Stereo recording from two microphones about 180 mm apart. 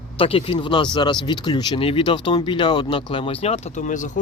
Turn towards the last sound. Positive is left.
turn(degrees=45)  # may be behind; listen again after turning